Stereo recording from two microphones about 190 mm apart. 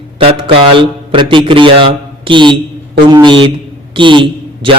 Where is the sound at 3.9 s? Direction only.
25° right (ahead or behind).